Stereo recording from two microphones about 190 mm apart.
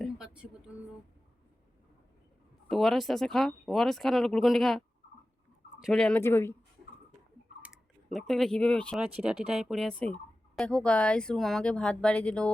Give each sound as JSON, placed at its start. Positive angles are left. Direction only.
{"t": 0.0, "sound": "a sound", "side_deg": -5}
{"t": 2.6, "sound": "speech", "side_deg": 0}
{"t": 5.8, "sound": "speech", "side_deg": 0}
{"t": 7.6, "sound": "speech", "side_deg": 0}